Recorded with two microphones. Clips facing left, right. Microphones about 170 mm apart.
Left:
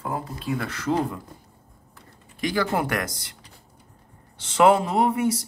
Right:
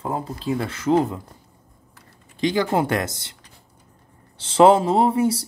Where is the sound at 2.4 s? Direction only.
25° right (ahead or behind).